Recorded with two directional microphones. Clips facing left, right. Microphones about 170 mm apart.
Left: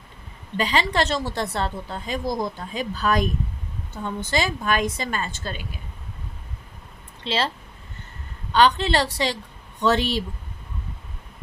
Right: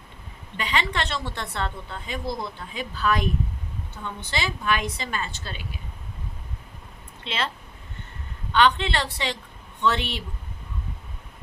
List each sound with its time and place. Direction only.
0.5 s a woman's voice: 35° left (ahead or behind)
7.3 s a woman's voice: 35° left (ahead or behind)
8.5 s a woman's voice: 35° left (ahead or behind)